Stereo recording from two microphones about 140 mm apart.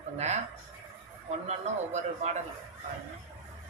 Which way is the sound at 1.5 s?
55° right (ahead or behind).